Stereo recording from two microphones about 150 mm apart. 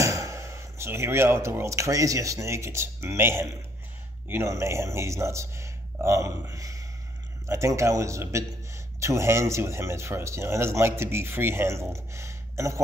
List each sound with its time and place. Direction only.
0.0 s a man's voice: 20° right (ahead or behind)